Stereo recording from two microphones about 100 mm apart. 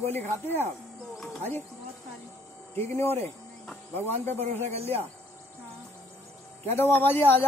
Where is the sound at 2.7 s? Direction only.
25° left (ahead or behind).